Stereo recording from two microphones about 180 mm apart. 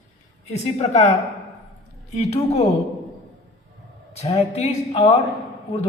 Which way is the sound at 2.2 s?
35° left (ahead or behind).